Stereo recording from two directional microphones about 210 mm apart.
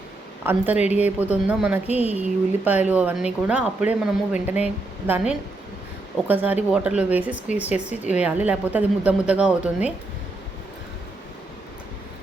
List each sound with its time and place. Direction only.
0.4 s speech: 10° right (ahead or behind)
1.9 s speech: 30° left (ahead or behind)
2.6 s speech: 10° right (ahead or behind)